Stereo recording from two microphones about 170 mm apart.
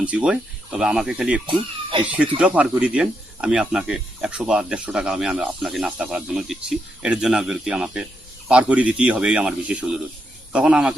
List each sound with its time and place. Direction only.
0.0 s speech: 5° right (ahead or behind)
1.5 s speech: 30° right (ahead or behind)
2.0 s speech: 10° right (ahead or behind)